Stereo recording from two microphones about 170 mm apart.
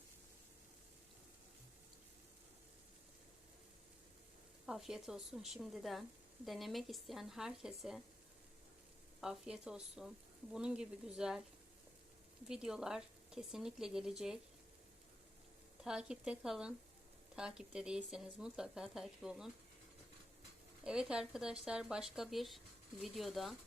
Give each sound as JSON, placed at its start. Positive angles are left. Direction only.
{"t": 4.6, "sound": "speech", "side_deg": 0}
{"t": 9.2, "sound": "speech", "side_deg": -5}
{"t": 12.5, "sound": "speech", "side_deg": -5}
{"t": 15.8, "sound": "speech", "side_deg": -5}
{"t": 20.8, "sound": "speech", "side_deg": -5}